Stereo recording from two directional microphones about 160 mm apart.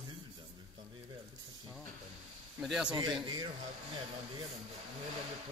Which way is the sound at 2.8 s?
25° right (ahead or behind).